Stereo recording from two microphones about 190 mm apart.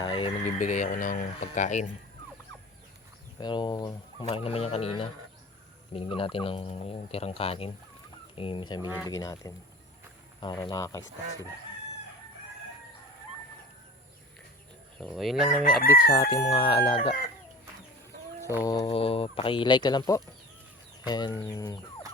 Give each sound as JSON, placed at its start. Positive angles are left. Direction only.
{"t": 0.0, "sound": "speech", "side_deg": 25}
{"t": 0.6, "sound": "speech", "side_deg": 40}
{"t": 3.4, "sound": "speech", "side_deg": 25}
{"t": 8.8, "sound": "speech", "side_deg": -10}
{"t": 9.0, "sound": "speech", "side_deg": 20}
{"t": 14.9, "sound": "chicken", "side_deg": 0}
{"t": 15.8, "sound": "chicken", "side_deg": 50}
{"t": 16.3, "sound": "speech", "side_deg": 30}
{"t": 18.6, "sound": "speech", "side_deg": 20}
{"t": 18.9, "sound": "speech", "side_deg": 30}